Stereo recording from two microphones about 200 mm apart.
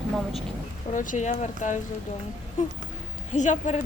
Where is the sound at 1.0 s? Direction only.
40° left (ahead or behind).